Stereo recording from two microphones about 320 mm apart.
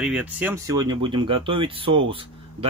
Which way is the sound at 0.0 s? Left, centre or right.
Centre.